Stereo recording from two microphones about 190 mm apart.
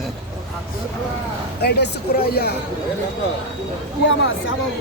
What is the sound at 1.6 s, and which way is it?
Speech, 55° left (ahead or behind).